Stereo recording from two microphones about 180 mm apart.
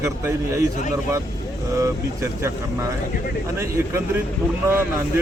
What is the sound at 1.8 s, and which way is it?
A man's voice, 15° right (ahead or behind).